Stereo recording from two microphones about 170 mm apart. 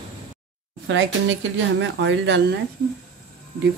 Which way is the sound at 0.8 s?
90° right.